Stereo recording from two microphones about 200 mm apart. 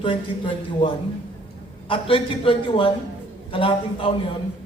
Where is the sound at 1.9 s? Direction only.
25° left (ahead or behind).